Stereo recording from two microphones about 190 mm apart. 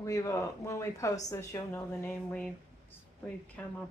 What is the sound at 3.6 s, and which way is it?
Speech, 10° left (ahead or behind).